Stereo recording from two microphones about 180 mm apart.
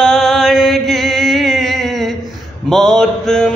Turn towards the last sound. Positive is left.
turn(degrees=0)  # may be behind; listen again after turning